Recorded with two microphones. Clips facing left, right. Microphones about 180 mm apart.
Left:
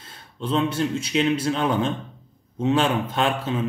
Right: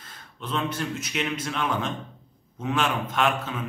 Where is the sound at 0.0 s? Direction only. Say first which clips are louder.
Left 7 dB; 30° left (ahead or behind).